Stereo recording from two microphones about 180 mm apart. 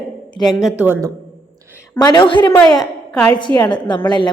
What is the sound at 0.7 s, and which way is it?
Speech, 10° right (ahead or behind).